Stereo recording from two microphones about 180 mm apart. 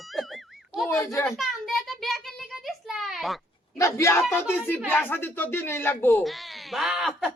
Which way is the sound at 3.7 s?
15° left (ahead or behind).